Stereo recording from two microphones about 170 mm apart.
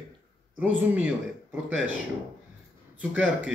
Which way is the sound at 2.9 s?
10° right (ahead or behind).